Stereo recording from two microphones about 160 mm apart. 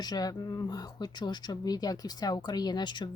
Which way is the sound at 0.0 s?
25° left (ahead or behind).